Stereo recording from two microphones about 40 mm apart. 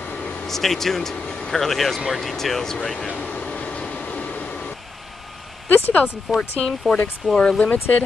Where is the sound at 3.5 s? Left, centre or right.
Left.